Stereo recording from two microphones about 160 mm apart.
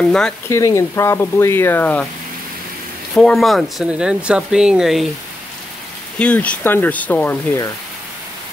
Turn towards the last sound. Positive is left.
turn(degrees=15)  # may be behind; listen again after turning